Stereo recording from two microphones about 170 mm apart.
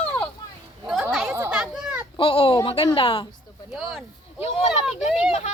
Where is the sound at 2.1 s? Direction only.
30° left (ahead or behind).